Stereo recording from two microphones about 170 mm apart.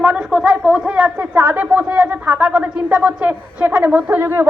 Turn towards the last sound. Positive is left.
turn(degrees=-10)  # may be behind; listen again after turning